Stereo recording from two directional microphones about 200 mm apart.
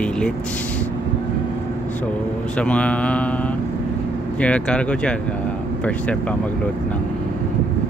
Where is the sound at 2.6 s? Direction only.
5° left (ahead or behind).